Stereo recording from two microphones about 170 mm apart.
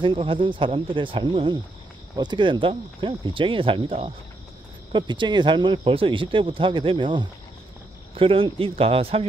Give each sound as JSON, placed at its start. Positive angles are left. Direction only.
{"t": 0.0, "sound": "speech", "side_deg": -30}